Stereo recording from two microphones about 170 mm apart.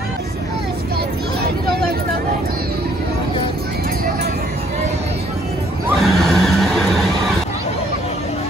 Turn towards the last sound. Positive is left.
turn(degrees=0)  # may be behind; listen again after turning